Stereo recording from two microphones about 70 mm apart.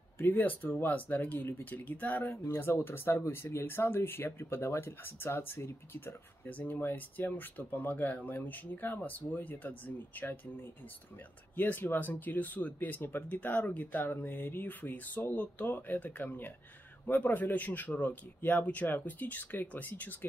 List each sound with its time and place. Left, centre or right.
0.2 s speech: left
2.3 s speech: left
11.5 s speech: left